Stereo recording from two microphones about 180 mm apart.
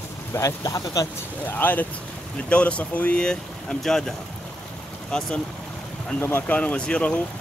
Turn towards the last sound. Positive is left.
turn(degrees=5)  # may be behind; listen again after turning